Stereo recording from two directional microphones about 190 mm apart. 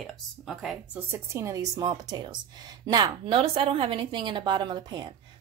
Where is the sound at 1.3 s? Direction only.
15° right (ahead or behind).